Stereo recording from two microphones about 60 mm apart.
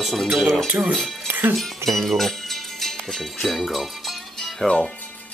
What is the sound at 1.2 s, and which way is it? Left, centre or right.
Music, right.